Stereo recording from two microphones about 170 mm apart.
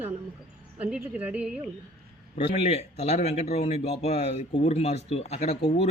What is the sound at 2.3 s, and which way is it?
A man's voice, 35° left (ahead or behind).